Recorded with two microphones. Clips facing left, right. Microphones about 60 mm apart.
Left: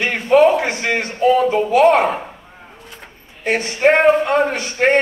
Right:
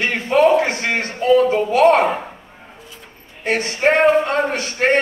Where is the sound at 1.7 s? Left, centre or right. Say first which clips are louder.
Left 1 dB; left.